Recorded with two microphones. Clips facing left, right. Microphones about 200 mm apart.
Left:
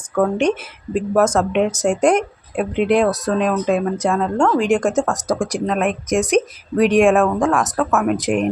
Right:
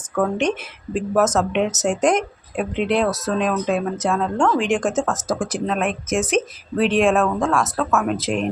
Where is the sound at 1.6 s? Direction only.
10° left (ahead or behind).